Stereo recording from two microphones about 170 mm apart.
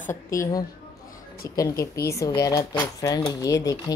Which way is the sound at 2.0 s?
20° left (ahead or behind).